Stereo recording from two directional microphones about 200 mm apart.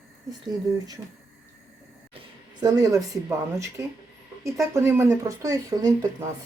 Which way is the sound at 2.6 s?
20° right (ahead or behind).